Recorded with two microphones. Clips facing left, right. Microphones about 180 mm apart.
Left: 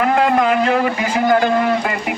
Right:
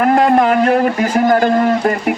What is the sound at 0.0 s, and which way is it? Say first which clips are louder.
A man's voice: right 4 dB; 40° right (ahead or behind).